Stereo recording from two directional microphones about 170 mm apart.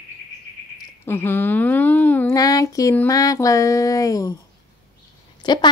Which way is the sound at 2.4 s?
20° left (ahead or behind).